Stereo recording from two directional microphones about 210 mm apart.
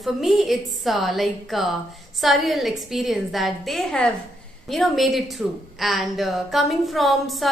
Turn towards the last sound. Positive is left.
turn(degrees=0)  # may be behind; listen again after turning